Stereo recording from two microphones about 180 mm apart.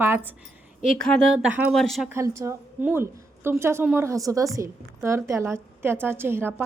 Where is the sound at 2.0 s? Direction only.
15° right (ahead or behind).